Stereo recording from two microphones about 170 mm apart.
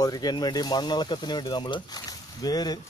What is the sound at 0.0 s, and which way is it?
Speech, 25° left (ahead or behind).